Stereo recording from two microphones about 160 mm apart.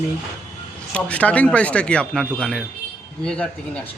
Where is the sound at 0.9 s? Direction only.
10° left (ahead or behind).